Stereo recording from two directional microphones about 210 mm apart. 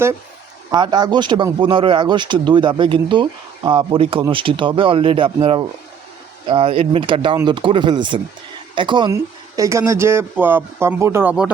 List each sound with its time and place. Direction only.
0.7 s speech: 20° right (ahead or behind)